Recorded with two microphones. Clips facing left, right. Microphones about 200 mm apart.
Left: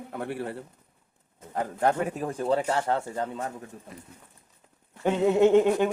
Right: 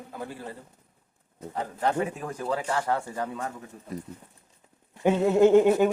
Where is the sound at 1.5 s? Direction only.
50° left (ahead or behind).